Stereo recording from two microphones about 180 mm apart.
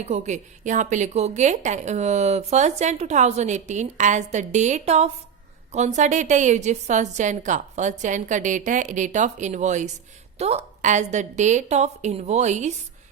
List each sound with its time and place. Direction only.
0.0 s a woman's voice: 40° right (ahead or behind)